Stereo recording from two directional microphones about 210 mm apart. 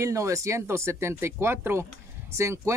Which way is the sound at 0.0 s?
15° right (ahead or behind).